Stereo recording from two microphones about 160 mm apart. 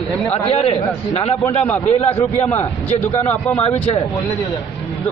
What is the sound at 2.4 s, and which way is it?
Speech, 10° left (ahead or behind).